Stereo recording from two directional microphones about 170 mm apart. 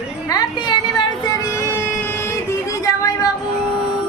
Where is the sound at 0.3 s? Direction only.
25° left (ahead or behind).